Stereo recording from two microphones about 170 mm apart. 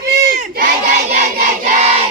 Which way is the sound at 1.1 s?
50° right (ahead or behind).